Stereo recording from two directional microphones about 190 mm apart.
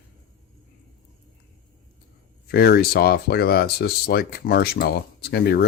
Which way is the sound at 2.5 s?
55° left (ahead or behind).